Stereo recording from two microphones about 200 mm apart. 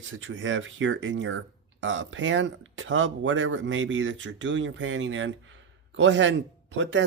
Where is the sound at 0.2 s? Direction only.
75° right (ahead or behind).